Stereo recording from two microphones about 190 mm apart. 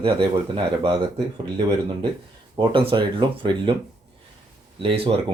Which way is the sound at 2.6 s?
25° right (ahead or behind).